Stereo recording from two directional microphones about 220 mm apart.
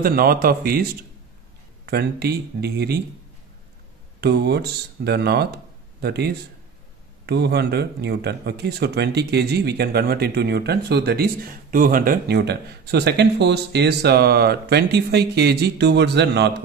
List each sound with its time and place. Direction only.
0.0 s speech: 40° right (ahead or behind)
1.9 s speech: 45° right (ahead or behind)
4.2 s speech: 50° right (ahead or behind)